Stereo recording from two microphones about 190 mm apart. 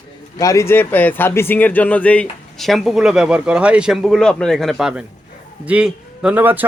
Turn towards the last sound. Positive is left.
turn(degrees=-10)  # may be behind; listen again after turning